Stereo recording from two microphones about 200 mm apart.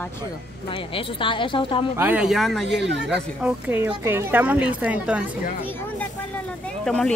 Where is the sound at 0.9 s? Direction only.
25° left (ahead or behind).